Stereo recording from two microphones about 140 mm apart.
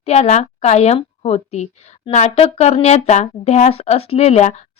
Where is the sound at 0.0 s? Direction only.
50° left (ahead or behind).